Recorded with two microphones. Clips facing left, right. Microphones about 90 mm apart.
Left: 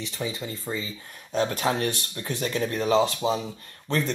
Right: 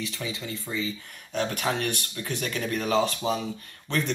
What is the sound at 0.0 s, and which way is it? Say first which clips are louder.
Speech: left 2 dB; 30° left (ahead or behind).